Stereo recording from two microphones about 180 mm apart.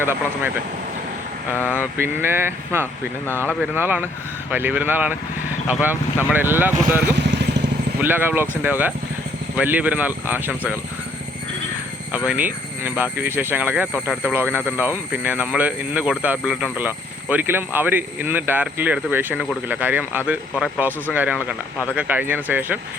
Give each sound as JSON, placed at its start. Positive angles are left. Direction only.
{"t": 0.0, "sound": "speech", "side_deg": -10}
{"t": 1.7, "sound": "speech", "side_deg": -10}
{"t": 3.4, "sound": "speech", "side_deg": 5}
{"t": 3.8, "sound": "speech", "side_deg": -10}
{"t": 7.3, "sound": "vehicle", "side_deg": -70}
{"t": 8.0, "sound": "speech", "side_deg": -10}
{"t": 12.1, "sound": "speech", "side_deg": -10}